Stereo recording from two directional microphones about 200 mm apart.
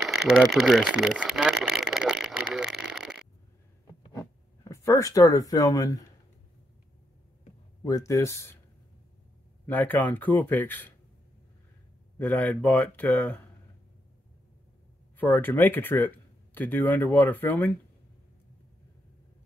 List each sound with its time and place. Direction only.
0.0 s a sound: centre (ahead or behind)
4.1 s a sound: 15° left (ahead or behind)
7.8 s speech: 15° left (ahead or behind)
9.7 s speech: 10° left (ahead or behind)
12.2 s speech: 10° left (ahead or behind)
15.1 s speech: 10° left (ahead or behind)